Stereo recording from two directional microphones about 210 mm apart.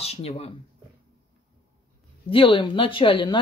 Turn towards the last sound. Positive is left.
turn(degrees=25)  # may be behind; listen again after turning